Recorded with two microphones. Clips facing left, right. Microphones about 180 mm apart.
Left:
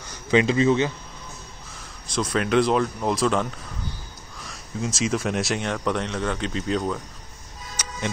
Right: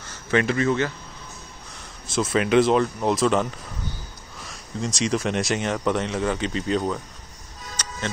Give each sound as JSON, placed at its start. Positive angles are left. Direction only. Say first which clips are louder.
{"t": 0.0, "sound": "speech", "louder": "left 2 dB", "side_deg": 15}
{"t": 1.7, "sound": "speech", "louder": "right 1 dB", "side_deg": 0}
{"t": 4.5, "sound": "speech", "louder": "even", "side_deg": 0}
{"t": 7.7, "sound": "music", "louder": "left 1 dB", "side_deg": 10}